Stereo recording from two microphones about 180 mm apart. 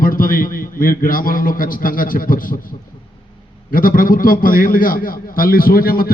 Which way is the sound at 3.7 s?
50° left (ahead or behind).